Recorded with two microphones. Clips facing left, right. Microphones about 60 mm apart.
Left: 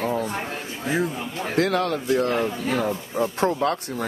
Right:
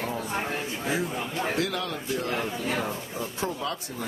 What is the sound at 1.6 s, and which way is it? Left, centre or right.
Speech, left.